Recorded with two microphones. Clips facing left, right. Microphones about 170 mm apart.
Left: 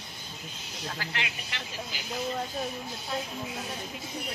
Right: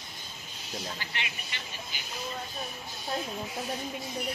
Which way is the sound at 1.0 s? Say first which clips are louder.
Left 3 dB; 90° left.